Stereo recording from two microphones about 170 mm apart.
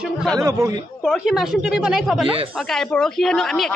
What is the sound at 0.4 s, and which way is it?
Speech, 20° right (ahead or behind).